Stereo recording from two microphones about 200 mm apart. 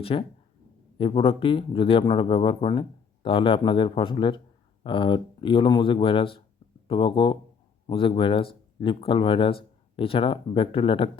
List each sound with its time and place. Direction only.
0.0 s speech: 30° left (ahead or behind)